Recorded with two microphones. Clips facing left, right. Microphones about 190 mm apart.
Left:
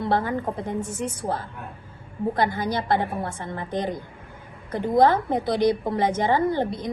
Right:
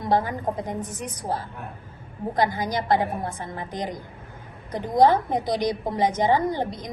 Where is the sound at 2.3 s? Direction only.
15° right (ahead or behind).